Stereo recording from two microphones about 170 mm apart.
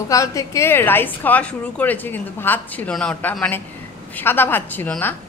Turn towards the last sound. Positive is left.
turn(degrees=10)  # may be behind; listen again after turning